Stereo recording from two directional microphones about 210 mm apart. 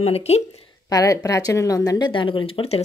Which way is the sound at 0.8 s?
15° left (ahead or behind).